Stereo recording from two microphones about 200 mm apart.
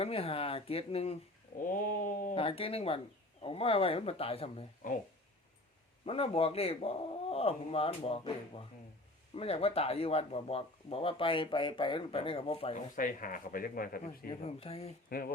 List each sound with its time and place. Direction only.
0.0 s speech: 30° left (ahead or behind)
1.6 s speech: 40° left (ahead or behind)
2.3 s speech: 30° left (ahead or behind)
6.1 s speech: 30° left (ahead or behind)
13.0 s speech: 40° left (ahead or behind)
14.4 s speech: 30° left (ahead or behind)